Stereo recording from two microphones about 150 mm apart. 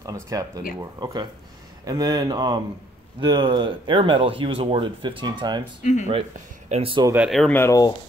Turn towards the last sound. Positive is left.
turn(degrees=20)  # may be behind; listen again after turning